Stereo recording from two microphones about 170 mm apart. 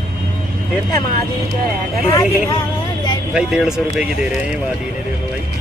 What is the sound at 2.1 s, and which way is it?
Vehicle, 25° left (ahead or behind).